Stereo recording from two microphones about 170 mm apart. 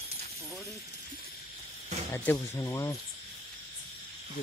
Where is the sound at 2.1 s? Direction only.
20° left (ahead or behind).